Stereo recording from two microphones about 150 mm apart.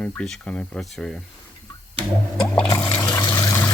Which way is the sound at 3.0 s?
25° left (ahead or behind).